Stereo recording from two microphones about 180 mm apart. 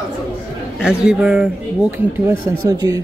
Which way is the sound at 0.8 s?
5° right (ahead or behind).